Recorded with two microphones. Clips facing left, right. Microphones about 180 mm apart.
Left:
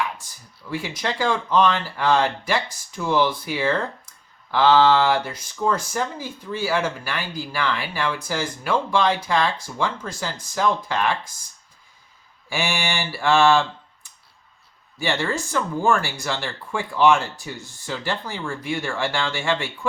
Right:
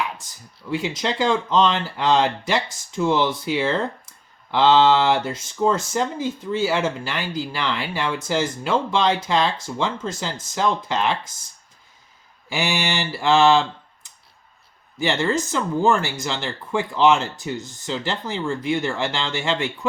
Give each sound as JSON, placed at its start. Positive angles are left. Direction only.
{"t": 0.7, "sound": "speech", "side_deg": -20}
{"t": 12.5, "sound": "speech", "side_deg": -20}